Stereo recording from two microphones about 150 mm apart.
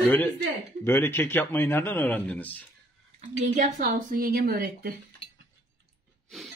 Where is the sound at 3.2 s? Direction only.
55° right (ahead or behind); by 4.9 s 80° right.